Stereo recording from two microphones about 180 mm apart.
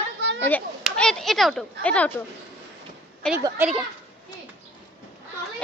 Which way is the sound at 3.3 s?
10° right (ahead or behind).